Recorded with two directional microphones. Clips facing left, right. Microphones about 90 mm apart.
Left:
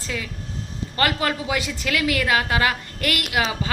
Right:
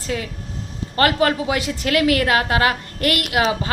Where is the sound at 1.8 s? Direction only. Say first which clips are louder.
Right 8 dB; 45° right (ahead or behind).